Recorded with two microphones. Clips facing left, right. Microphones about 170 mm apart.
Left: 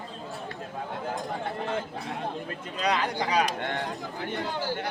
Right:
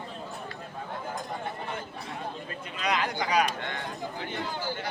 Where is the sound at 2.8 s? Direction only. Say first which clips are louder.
Left 2 dB; 35° left (ahead or behind).